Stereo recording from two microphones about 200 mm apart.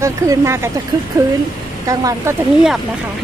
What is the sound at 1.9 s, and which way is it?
Speech, 15° right (ahead or behind).